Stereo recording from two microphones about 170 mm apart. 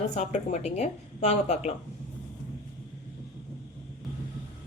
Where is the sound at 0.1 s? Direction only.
45° left (ahead or behind).